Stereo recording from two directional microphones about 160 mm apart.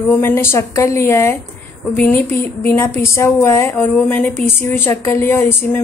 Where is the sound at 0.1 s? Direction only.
15° left (ahead or behind).